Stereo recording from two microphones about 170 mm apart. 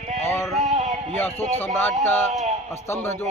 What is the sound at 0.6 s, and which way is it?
Synthetic singing, 45° right (ahead or behind).